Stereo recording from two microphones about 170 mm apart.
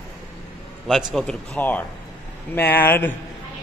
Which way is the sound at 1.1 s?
5° left (ahead or behind).